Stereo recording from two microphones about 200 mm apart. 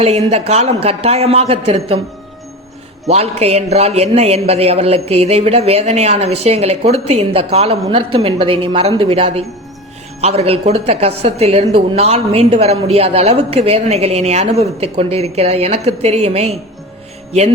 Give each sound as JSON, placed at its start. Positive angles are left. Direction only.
{"t": 0.3, "sound": "a woman's voice", "side_deg": -30}
{"t": 3.1, "sound": "a woman's voice", "side_deg": -30}